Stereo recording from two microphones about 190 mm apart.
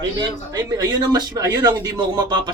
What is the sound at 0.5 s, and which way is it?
Speech, 20° right (ahead or behind).